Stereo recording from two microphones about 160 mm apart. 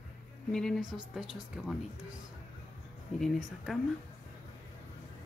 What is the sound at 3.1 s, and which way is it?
Speech, centre (ahead or behind).